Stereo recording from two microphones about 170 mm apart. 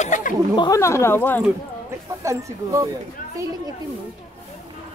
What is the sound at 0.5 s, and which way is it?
Speech, 20° left (ahead or behind).